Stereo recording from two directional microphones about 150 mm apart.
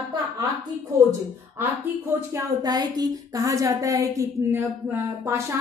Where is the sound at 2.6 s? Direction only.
25° right (ahead or behind).